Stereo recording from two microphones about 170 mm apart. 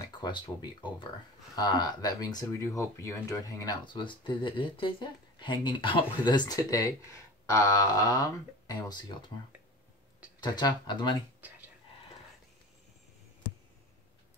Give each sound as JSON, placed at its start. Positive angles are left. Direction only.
{"t": 0.2, "sound": "speech", "side_deg": 25}
{"t": 10.4, "sound": "speech", "side_deg": 25}